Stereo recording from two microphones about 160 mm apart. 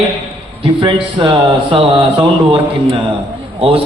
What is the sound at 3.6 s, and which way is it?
Speech, 35° right (ahead or behind).